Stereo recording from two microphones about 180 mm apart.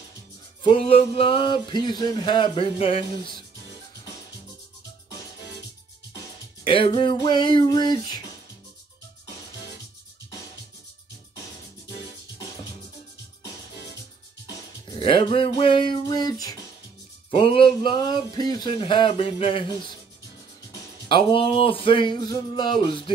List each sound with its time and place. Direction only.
0.7 s speech: 30° left (ahead or behind)
6.6 s speech: 30° left (ahead or behind)
15.0 s speech: 30° left (ahead or behind)
21.1 s speech: 30° left (ahead or behind)